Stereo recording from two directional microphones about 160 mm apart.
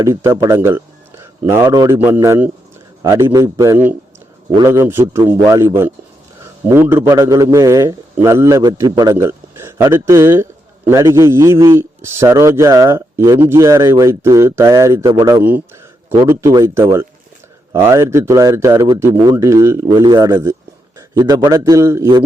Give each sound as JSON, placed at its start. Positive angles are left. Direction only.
{"t": 0.0, "sound": "speech", "side_deg": -20}
{"t": 2.0, "sound": "a man's voice", "side_deg": -15}